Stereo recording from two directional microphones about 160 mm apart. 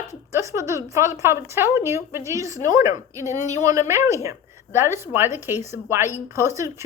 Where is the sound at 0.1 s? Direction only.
20° right (ahead or behind).